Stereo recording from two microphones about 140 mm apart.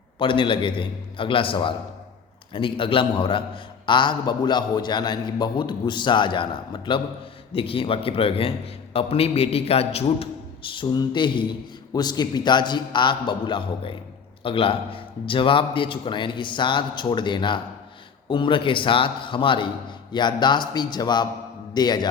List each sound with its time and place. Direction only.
0.2 s a man's voice: 35° left (ahead or behind)